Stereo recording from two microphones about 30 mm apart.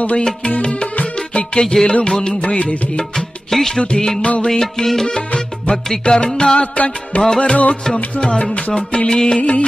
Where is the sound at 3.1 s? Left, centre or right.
Centre.